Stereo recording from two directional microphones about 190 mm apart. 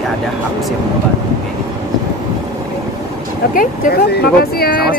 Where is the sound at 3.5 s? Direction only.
45° left (ahead or behind).